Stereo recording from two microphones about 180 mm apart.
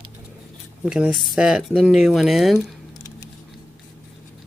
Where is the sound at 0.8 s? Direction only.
5° right (ahead or behind).